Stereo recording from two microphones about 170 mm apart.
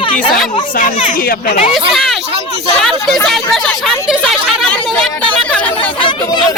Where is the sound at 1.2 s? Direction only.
65° left (ahead or behind).